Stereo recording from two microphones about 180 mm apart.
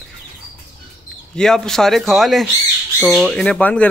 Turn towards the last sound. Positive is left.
turn(degrees=5)  # may be behind; listen again after turning